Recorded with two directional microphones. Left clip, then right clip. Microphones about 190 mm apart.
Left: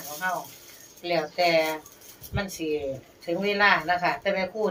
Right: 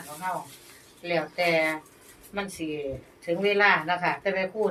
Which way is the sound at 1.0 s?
10° right (ahead or behind).